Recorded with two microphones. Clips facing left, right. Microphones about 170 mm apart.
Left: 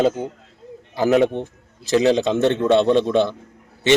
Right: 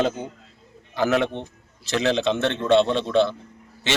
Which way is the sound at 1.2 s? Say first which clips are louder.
Left 7 dB; 45° left (ahead or behind).